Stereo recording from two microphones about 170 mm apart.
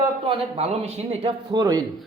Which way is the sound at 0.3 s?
35° right (ahead or behind).